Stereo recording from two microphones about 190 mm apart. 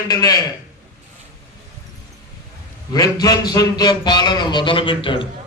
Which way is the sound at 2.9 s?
20° left (ahead or behind).